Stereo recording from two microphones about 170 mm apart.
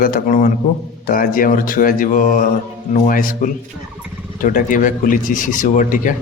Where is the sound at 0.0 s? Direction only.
55° left (ahead or behind).